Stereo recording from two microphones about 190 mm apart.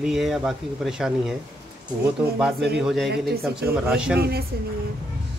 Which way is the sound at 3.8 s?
5° right (ahead or behind).